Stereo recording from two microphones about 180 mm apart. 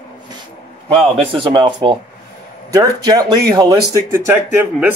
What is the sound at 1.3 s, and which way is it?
Speech, 25° right (ahead or behind).